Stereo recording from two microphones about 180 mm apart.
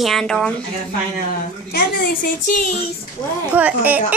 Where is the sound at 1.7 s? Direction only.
55° left (ahead or behind).